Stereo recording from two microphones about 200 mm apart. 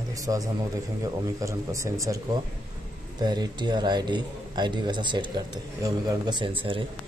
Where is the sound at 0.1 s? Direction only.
15° right (ahead or behind).